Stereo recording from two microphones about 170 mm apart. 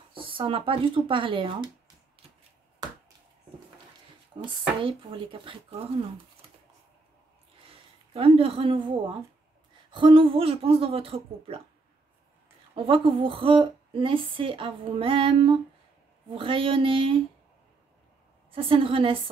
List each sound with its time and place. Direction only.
0.1 s speech: 30° right (ahead or behind)
4.3 s speech: 30° right (ahead or behind)
7.7 s speech: 35° right (ahead or behind)
12.7 s speech: 30° right (ahead or behind)
18.5 s speech: 30° right (ahead or behind)